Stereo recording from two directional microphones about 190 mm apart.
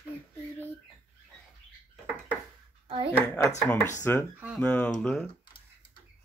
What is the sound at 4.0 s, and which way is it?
Speech, 10° left (ahead or behind).